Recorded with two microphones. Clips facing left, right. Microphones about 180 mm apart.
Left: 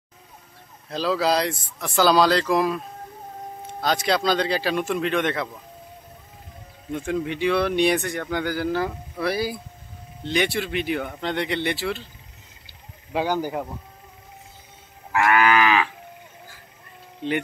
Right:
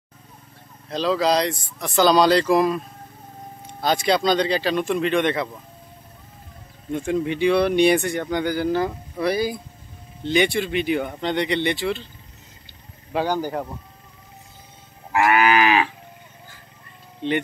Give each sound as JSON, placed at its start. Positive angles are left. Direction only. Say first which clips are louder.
{"t": 0.8, "sound": "speech", "louder": "right 2 dB", "side_deg": 5}
{"t": 3.8, "sound": "speech", "louder": "right 2 dB", "side_deg": 0}
{"t": 6.9, "sound": "speech", "louder": "right 3 dB", "side_deg": 0}
{"t": 12.6, "sound": "a sound", "louder": "right 1 dB", "side_deg": 10}
{"t": 15.1, "sound": "moo", "louder": "right 1 dB", "side_deg": -25}